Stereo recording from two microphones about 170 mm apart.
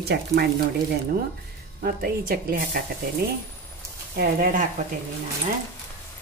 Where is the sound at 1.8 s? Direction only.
65° right (ahead or behind).